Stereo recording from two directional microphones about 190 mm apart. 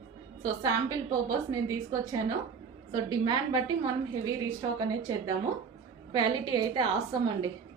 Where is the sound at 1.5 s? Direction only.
20° right (ahead or behind).